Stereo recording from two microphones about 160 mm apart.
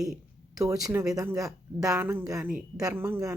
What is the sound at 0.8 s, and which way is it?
A woman's voice, 15° right (ahead or behind).